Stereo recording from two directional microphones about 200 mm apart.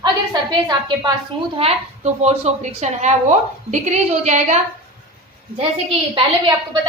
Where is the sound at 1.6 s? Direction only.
30° right (ahead or behind).